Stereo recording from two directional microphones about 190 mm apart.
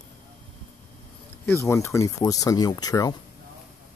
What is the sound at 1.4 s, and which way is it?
Speech, 10° left (ahead or behind).